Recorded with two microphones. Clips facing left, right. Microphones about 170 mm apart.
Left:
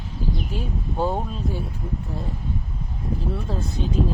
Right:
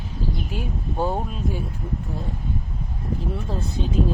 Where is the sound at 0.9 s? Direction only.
Centre (ahead or behind).